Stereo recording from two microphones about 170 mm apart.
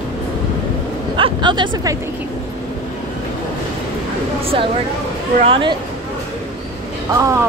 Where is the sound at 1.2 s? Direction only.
25° right (ahead or behind).